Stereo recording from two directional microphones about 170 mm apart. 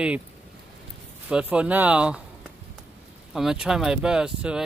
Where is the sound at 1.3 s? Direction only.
5° right (ahead or behind).